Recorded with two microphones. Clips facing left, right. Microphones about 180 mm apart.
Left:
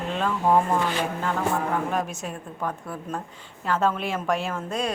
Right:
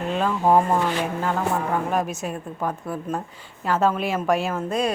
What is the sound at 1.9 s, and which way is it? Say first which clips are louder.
A woman's voice: right 3 dB; 10° right (ahead or behind).